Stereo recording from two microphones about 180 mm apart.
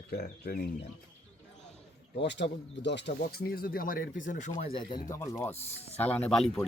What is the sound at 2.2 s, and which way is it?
Speech, 75° left (ahead or behind).